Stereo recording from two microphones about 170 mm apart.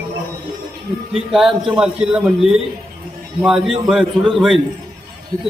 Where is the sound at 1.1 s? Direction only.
Centre (ahead or behind).